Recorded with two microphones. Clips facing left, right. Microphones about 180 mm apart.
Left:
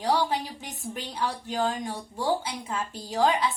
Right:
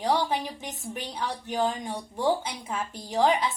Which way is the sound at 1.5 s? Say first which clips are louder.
Right 3 dB; 15° right (ahead or behind).